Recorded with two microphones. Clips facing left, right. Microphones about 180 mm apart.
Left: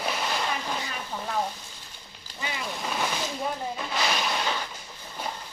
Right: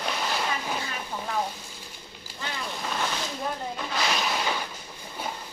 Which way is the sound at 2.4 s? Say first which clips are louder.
Left 1 dB; 10° left (ahead or behind).